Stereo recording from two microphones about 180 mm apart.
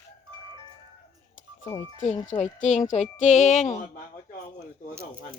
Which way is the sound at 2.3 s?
40° left (ahead or behind).